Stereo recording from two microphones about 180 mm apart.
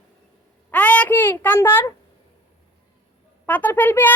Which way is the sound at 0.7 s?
5° left (ahead or behind).